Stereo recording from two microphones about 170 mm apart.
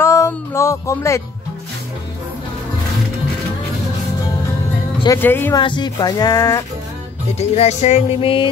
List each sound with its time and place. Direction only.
0.0 s music: 15° left (ahead or behind)
5.0 s speech: 15° left (ahead or behind)
5.6 s speech: 25° left (ahead or behind)
7.3 s music: 40° left (ahead or behind)